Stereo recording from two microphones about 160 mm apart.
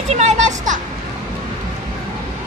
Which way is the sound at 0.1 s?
45° right (ahead or behind).